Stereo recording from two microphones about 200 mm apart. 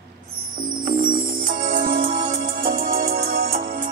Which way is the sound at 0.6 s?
45° right (ahead or behind).